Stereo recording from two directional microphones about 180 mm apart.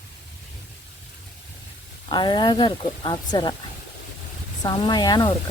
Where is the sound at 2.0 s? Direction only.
25° left (ahead or behind).